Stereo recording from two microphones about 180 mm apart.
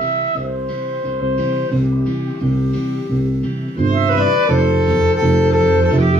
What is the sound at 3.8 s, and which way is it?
Music, 50° right (ahead or behind).